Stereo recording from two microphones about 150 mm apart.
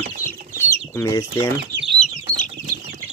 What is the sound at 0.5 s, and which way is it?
Chicken, 20° left (ahead or behind).